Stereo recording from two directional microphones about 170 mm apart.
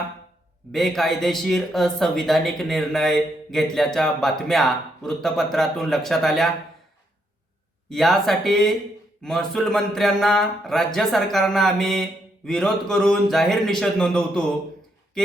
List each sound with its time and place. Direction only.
0.7 s speech: centre (ahead or behind)
7.9 s speech: centre (ahead or behind)